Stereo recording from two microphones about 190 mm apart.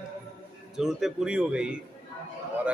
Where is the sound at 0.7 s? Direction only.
Centre (ahead or behind).